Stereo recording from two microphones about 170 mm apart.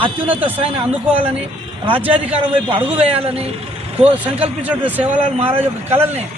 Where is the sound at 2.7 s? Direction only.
35° right (ahead or behind).